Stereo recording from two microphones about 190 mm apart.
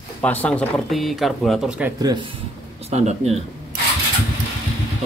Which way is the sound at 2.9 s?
35° right (ahead or behind).